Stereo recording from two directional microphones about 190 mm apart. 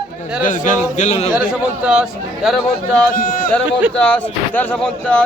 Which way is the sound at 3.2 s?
50° left (ahead or behind).